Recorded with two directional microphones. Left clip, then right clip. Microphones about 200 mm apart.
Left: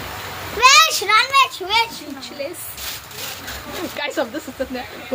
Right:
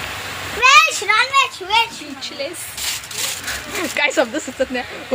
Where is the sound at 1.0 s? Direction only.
55° left (ahead or behind).